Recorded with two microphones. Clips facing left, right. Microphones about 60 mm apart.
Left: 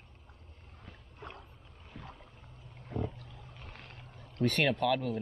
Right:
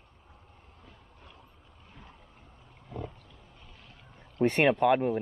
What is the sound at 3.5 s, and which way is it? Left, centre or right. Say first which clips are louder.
Vehicle: left 4 dB; left.